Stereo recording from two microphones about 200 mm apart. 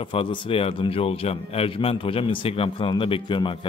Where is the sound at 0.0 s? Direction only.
25° left (ahead or behind).